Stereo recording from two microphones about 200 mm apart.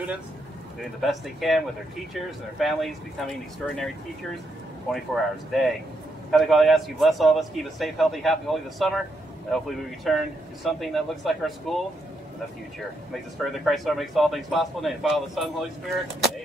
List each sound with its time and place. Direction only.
1.0 s a man's voice: centre (ahead or behind)
2.6 s a man's voice: centre (ahead or behind)
4.9 s a man's voice: centre (ahead or behind)
13.1 s a man's voice: centre (ahead or behind)